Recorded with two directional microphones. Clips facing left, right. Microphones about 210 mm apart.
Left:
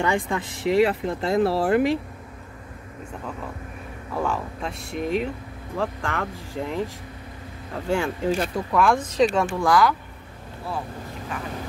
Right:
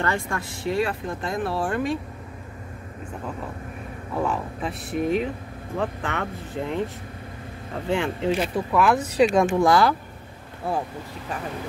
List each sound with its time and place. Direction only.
0.0 s speech: 15° left (ahead or behind)
4.1 s speech: 5° right (ahead or behind); by 9.9 s 25° right (ahead or behind)